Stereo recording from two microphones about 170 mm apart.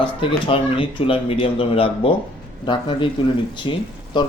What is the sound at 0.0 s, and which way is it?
A man's voice, 30° left (ahead or behind).